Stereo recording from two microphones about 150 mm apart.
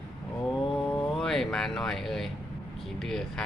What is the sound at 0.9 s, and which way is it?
Mantra, 20° left (ahead or behind).